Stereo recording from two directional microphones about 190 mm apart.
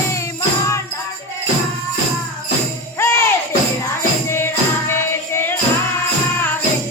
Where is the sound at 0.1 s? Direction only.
15° left (ahead or behind).